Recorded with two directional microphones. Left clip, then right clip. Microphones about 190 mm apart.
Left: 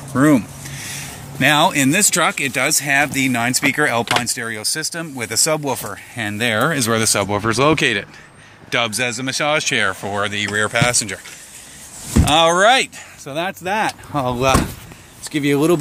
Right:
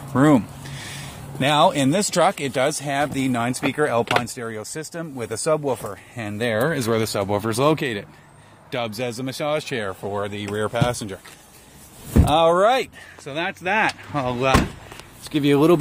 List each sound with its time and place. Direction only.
0.1 s a sound: 15° right (ahead or behind)
1.4 s speech: 10° right (ahead or behind)
5.6 s speech: 5° left (ahead or behind)
8.6 s a sound: 5° right (ahead or behind)
8.9 s speech: 15° right (ahead or behind); by 10.3 s centre (ahead or behind)
10.3 s speech: 15° right (ahead or behind)
12.3 s speech: 10° right (ahead or behind)
13.2 s speech: 15° left (ahead or behind)
14.2 s speech: 15° left (ahead or behind)
15.2 s speech: 5° right (ahead or behind)